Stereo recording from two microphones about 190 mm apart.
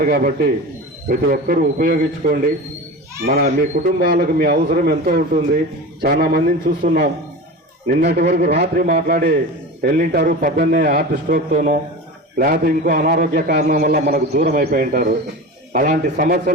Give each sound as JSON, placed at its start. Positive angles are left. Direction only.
{"t": 0.0, "sound": "a man's voice", "side_deg": -55}